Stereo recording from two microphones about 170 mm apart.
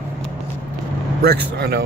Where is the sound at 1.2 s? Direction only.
70° right (ahead or behind).